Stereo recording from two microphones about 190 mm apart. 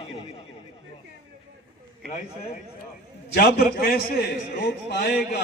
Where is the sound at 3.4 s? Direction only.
55° left (ahead or behind).